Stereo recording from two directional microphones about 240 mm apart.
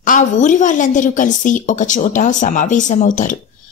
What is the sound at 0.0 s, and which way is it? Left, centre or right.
A woman's voice, left.